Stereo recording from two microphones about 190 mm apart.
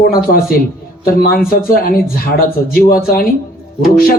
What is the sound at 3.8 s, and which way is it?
Speech, 50° left (ahead or behind).